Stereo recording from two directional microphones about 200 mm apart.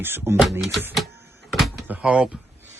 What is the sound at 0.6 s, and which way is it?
Speech, centre (ahead or behind).